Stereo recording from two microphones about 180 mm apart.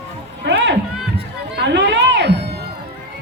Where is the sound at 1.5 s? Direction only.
70° right (ahead or behind).